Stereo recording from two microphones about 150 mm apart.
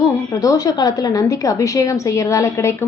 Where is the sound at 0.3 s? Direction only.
25° left (ahead or behind).